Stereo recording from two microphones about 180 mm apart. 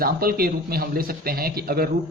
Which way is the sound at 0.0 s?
55° right (ahead or behind).